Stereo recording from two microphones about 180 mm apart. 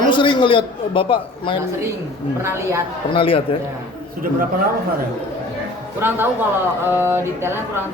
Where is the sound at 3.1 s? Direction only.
30° left (ahead or behind).